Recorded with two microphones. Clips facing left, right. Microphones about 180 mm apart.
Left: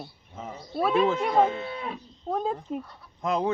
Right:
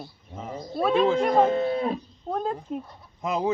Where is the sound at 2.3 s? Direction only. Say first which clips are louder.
Even; centre (ahead or behind).